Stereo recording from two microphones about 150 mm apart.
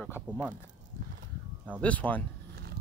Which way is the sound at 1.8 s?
10° left (ahead or behind).